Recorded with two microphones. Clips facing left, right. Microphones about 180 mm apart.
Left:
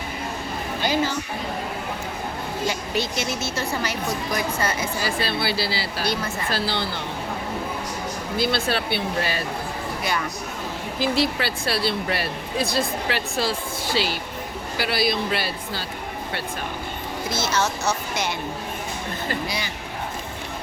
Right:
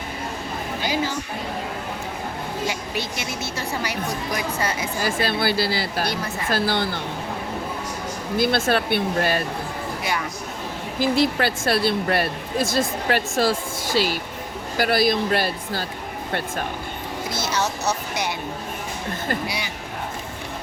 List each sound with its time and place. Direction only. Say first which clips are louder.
2.6 s a woman's voice: left 2 dB; 15° right (ahead or behind)
4.9 s speech: right 2 dB; 50° right (ahead or behind)
8.4 s speech: right 4 dB; 50° right (ahead or behind)
11.0 s speech: right 3 dB; 50° right (ahead or behind)
17.4 s a woman's voice: even; 20° right (ahead or behind)